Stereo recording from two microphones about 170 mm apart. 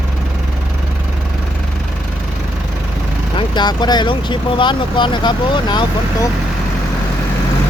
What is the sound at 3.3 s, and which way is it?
Speech, 25° left (ahead or behind).